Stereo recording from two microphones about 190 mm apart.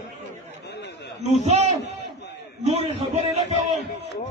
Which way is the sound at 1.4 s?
35° right (ahead or behind).